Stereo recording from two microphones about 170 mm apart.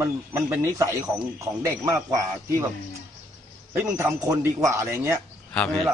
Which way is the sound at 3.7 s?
15° right (ahead or behind).